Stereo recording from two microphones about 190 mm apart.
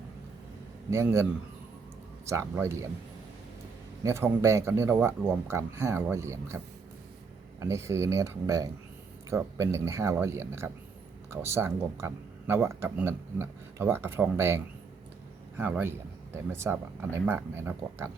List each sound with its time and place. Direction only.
0.9 s speech: 15° right (ahead or behind)
4.0 s speech: 15° right (ahead or behind)
7.6 s speech: 15° right (ahead or behind)